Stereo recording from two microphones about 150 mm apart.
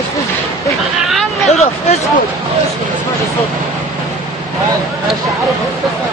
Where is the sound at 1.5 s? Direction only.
45° left (ahead or behind).